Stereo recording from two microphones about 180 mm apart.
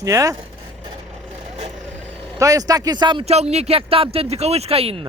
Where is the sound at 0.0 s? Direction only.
20° right (ahead or behind).